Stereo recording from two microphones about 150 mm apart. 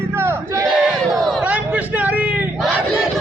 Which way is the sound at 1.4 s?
10° right (ahead or behind).